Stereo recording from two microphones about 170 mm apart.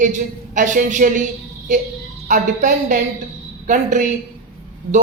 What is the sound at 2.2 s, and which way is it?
Speech, 50° right (ahead or behind).